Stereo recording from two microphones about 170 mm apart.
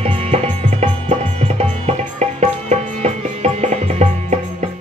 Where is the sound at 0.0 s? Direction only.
35° right (ahead or behind).